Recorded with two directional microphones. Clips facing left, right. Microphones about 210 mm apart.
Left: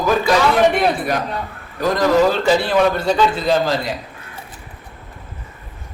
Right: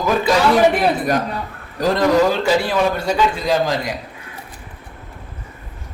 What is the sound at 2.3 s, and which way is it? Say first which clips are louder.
A man's voice: left 1 dB; 10° right (ahead or behind).